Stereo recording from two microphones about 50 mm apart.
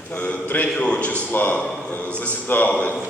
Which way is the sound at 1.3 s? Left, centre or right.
Left.